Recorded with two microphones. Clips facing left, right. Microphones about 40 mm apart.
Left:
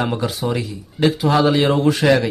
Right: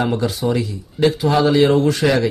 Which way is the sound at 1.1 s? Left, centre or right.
Centre.